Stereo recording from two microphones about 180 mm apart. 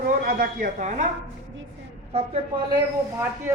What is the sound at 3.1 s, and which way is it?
Speech, 10° right (ahead or behind).